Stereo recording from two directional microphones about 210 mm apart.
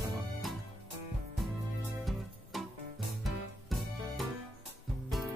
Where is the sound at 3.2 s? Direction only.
Centre (ahead or behind).